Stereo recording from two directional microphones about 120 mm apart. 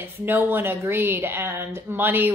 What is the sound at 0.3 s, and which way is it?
A woman's voice, 15° right (ahead or behind).